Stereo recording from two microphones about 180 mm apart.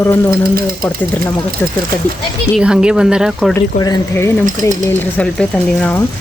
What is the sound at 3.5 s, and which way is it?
Speech, 15° left (ahead or behind).